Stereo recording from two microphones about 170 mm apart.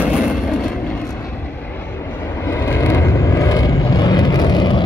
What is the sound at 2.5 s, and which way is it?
Vehicle, 15° left (ahead or behind).